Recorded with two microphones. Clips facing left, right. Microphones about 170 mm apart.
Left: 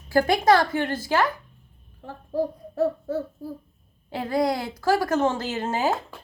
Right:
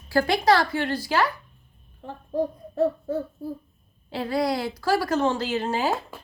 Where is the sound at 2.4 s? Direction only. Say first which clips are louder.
Even; 5° left (ahead or behind).